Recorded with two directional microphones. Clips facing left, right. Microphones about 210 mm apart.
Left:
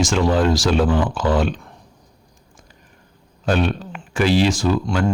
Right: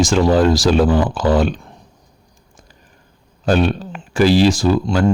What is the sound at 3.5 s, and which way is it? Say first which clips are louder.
Speech: right 4 dB; 35° right (ahead or behind).